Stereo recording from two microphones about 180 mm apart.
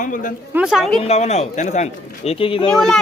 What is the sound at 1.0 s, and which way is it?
Speech, 40° left (ahead or behind).